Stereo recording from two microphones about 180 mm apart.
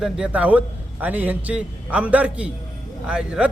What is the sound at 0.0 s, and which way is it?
A man's voice, 5° right (ahead or behind).